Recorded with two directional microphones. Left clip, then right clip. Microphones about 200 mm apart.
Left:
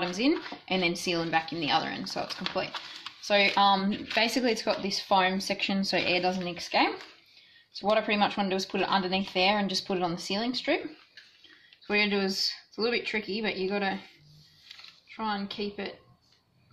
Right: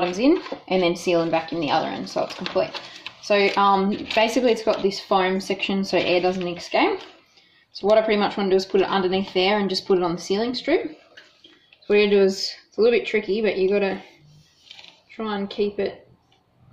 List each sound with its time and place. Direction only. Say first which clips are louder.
0.2 s speech: right 7 dB; 30° left (ahead or behind)
3.2 s speech: right 5 dB; 35° left (ahead or behind)
7.9 s speech: right 7 dB; 40° left (ahead or behind)
11.9 s speech: right 10 dB; 40° left (ahead or behind)
15.1 s speech: right 7 dB; 40° left (ahead or behind)